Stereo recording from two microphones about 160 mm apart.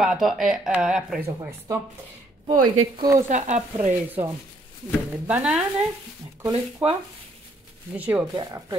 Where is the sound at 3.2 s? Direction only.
50° right (ahead or behind).